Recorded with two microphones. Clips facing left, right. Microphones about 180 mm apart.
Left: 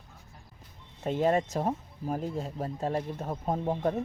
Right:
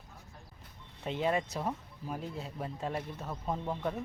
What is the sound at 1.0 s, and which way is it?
Speech, 45° left (ahead or behind).